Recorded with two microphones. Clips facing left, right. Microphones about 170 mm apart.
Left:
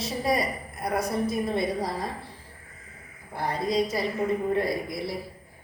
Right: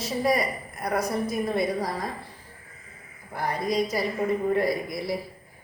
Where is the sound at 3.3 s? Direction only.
25° left (ahead or behind).